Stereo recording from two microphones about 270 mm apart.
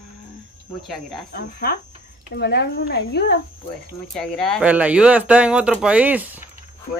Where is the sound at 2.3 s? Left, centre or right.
Left.